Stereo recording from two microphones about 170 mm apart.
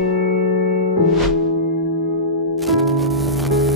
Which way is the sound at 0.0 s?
70° right (ahead or behind).